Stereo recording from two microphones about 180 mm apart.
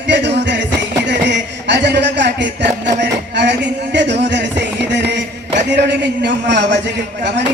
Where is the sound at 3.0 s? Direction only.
70° right (ahead or behind).